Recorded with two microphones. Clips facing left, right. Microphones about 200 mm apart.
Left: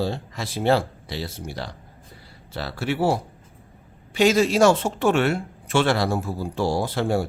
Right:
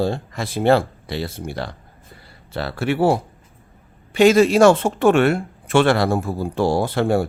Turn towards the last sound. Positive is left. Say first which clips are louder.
# right 4 dB
turn(degrees=-55)  # may be behind; listen again after turning